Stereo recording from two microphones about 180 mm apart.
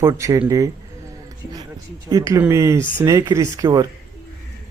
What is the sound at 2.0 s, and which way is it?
Speech, 20° right (ahead or behind).